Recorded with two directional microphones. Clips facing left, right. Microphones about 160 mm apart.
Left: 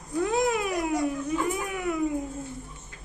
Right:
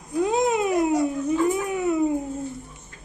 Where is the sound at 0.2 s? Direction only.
20° right (ahead or behind).